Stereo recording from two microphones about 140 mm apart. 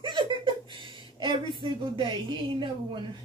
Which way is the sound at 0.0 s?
35° right (ahead or behind).